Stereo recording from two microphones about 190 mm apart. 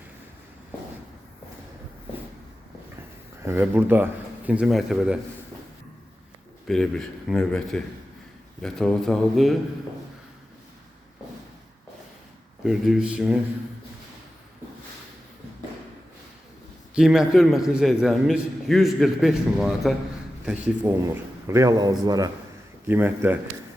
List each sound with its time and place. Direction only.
3.4 s speech: 10° right (ahead or behind)
6.7 s a man's voice: 5° left (ahead or behind)
12.6 s a man's voice: centre (ahead or behind)
16.9 s a man's voice: 5° right (ahead or behind)
21.4 s a man's voice: 15° right (ahead or behind)